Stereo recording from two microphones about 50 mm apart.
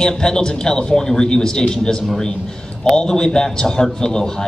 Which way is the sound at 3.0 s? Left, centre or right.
Centre.